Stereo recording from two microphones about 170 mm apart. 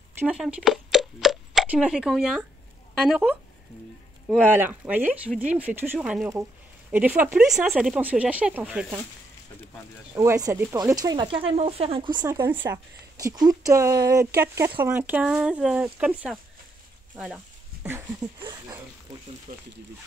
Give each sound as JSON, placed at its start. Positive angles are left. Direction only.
{"t": 0.2, "sound": "speech", "side_deg": -5}
{"t": 10.1, "sound": "speech", "side_deg": -20}
{"t": 12.3, "sound": "speech", "side_deg": -15}
{"t": 18.4, "sound": "speech", "side_deg": -25}
{"t": 19.5, "sound": "speech", "side_deg": -50}